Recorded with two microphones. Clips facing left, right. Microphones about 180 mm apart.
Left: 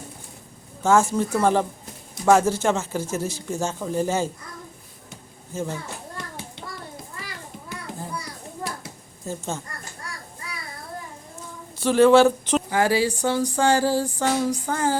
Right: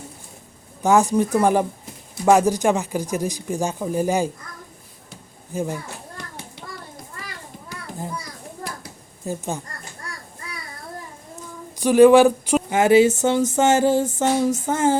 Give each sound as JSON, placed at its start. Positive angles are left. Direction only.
{"t": 0.8, "sound": "speech", "side_deg": -15}
{"t": 5.5, "sound": "speech", "side_deg": -15}
{"t": 9.2, "sound": "speech", "side_deg": -15}
{"t": 11.8, "sound": "speech", "side_deg": -15}
{"t": 12.7, "sound": "a sound", "side_deg": -20}